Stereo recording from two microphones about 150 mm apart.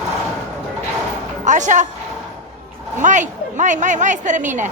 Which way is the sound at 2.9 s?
55° right (ahead or behind).